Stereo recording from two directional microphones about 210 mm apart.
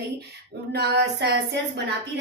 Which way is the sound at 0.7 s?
50° right (ahead or behind).